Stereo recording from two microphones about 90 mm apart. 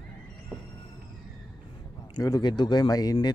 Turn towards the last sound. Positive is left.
turn(degrees=50)  # may be behind; listen again after turning